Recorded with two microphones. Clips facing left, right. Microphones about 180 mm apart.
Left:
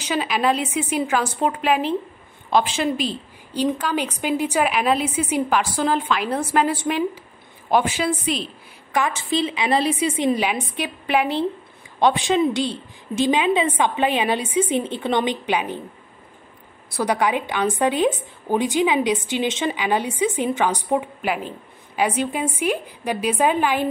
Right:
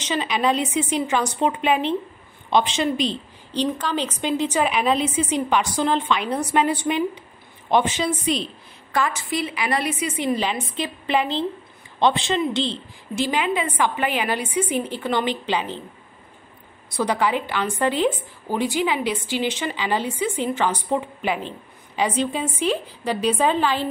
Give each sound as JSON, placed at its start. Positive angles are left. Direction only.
{"t": 0.0, "sound": "a woman's voice", "side_deg": 5}
{"t": 8.9, "sound": "a woman's voice", "side_deg": 25}
{"t": 10.3, "sound": "a woman's voice", "side_deg": 10}
{"t": 16.9, "sound": "a woman's voice", "side_deg": 10}